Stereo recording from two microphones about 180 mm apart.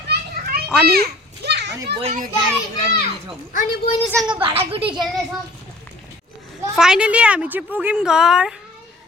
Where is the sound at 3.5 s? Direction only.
45° left (ahead or behind).